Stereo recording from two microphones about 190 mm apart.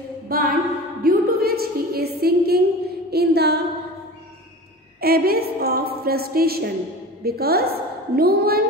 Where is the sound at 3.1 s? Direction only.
60° right (ahead or behind).